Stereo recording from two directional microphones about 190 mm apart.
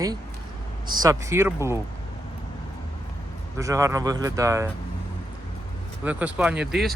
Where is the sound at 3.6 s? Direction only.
15° right (ahead or behind).